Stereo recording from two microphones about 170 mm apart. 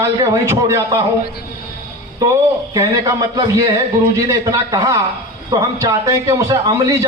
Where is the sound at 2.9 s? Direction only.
20° right (ahead or behind).